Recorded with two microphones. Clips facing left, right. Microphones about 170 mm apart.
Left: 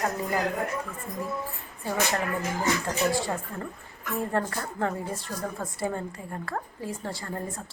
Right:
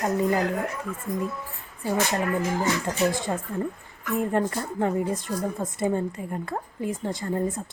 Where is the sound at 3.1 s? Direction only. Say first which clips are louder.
Right 1 dB; 20° right (ahead or behind).